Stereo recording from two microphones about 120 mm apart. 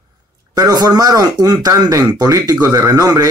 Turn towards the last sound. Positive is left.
turn(degrees=-30)  # may be behind; listen again after turning